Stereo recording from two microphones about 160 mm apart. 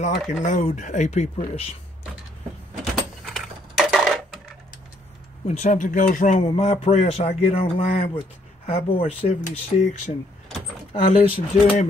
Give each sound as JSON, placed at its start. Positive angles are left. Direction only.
{"t": 0.0, "sound": "speech", "side_deg": 50}
{"t": 2.8, "sound": "a sound", "side_deg": 0}
{"t": 5.5, "sound": "speech", "side_deg": 50}
{"t": 6.4, "sound": "speech", "side_deg": 35}
{"t": 10.9, "sound": "speech", "side_deg": 40}